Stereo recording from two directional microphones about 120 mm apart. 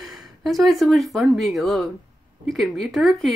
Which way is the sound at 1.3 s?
Centre (ahead or behind).